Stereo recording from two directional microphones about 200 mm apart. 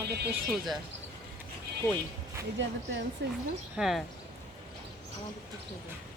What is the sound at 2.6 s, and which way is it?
Speech, 65° right (ahead or behind).